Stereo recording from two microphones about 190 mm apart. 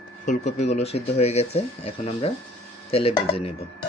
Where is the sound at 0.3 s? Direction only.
35° left (ahead or behind).